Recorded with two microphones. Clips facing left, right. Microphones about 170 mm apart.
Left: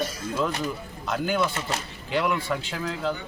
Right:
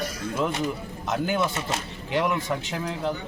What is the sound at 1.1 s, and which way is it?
A man's voice, 20° right (ahead or behind).